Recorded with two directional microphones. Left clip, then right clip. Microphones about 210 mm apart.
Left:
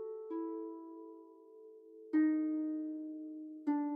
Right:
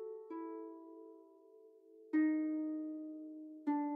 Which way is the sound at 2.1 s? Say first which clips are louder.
Left 2 dB; 35° right (ahead or behind).